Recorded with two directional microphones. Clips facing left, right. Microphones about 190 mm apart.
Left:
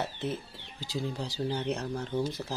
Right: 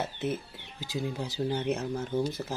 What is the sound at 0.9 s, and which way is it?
Speech, centre (ahead or behind).